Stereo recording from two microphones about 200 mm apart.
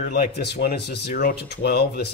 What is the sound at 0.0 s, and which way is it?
Speech, 50° left (ahead or behind).